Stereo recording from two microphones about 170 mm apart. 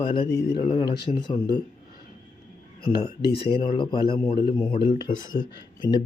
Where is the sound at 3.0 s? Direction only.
70° left (ahead or behind).